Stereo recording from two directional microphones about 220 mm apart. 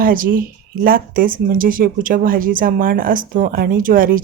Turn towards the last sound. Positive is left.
turn(degrees=-40)  # may be behind; listen again after turning